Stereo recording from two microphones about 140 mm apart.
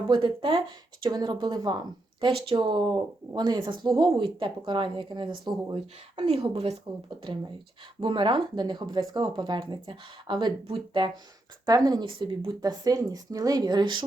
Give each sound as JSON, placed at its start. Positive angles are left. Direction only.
{"t": 0.1, "sound": "a woman's voice", "side_deg": -35}
{"t": 8.0, "sound": "a woman's voice", "side_deg": -35}